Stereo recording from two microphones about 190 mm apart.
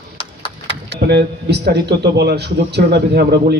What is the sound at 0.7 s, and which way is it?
A man's voice, 65° right (ahead or behind).